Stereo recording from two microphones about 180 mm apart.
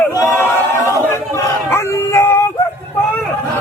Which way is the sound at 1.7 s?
15° left (ahead or behind).